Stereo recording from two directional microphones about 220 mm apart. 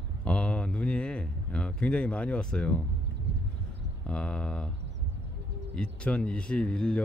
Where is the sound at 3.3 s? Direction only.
55° right (ahead or behind).